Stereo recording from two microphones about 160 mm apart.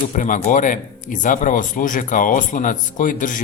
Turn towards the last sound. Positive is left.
turn(degrees=55)  # may be behind; listen again after turning